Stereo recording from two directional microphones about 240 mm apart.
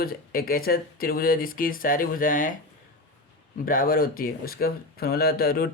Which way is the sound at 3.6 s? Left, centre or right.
Left.